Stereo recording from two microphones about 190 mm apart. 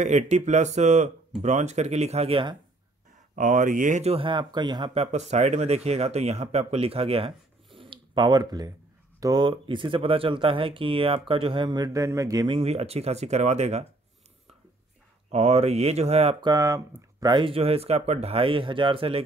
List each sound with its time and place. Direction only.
0.0 s speech: 40° right (ahead or behind)
3.3 s speech: 45° right (ahead or behind)
7.8 s a sound: 25° right (ahead or behind)
9.2 s speech: 20° right (ahead or behind)
15.3 s speech: 35° right (ahead or behind)